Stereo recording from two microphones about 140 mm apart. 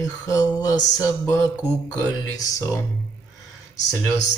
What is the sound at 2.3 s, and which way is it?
Speech, 25° left (ahead or behind).